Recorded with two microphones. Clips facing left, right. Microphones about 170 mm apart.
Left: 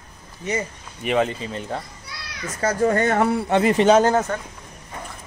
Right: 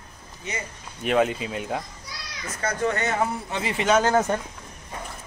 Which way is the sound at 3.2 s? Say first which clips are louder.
Left 8 dB; 70° left (ahead or behind).